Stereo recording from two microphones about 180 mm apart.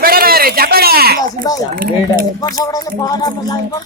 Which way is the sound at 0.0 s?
55° right (ahead or behind).